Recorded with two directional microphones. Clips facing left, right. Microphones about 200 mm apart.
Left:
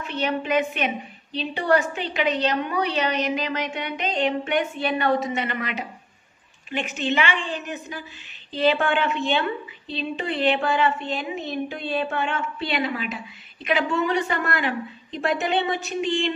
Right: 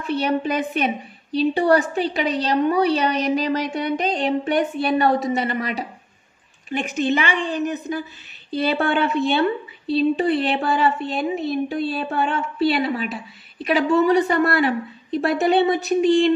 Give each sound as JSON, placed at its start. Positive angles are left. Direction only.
{"t": 0.0, "sound": "a woman's voice", "side_deg": -40}